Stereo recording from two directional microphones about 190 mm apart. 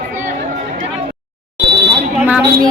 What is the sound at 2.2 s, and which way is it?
Speech, 10° right (ahead or behind).